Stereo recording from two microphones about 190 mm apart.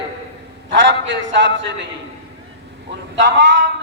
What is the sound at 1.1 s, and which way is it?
Speech, 80° right.